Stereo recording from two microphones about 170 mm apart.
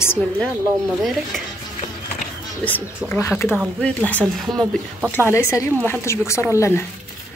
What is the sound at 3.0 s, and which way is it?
Speech, 10° left (ahead or behind).